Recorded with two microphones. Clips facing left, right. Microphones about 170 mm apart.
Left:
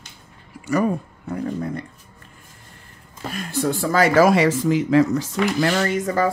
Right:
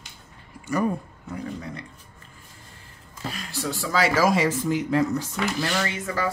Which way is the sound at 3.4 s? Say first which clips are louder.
Left 10 dB; 50° left (ahead or behind).